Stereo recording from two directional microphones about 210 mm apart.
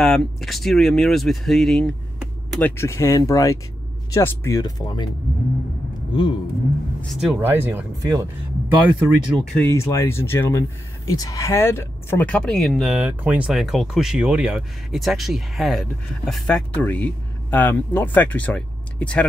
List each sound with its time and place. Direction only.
0.0 s speech: centre (ahead or behind); by 5.0 s 20° left (ahead or behind)
7.0 s speech: centre (ahead or behind)
7.3 s speech: 10° right (ahead or behind)
9.0 s speech: centre (ahead or behind)